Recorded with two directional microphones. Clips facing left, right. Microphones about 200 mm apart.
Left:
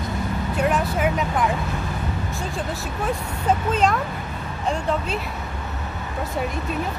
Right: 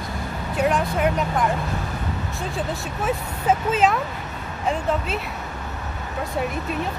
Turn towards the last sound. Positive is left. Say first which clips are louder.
# even
turn(degrees=-5)  # may be behind; listen again after turning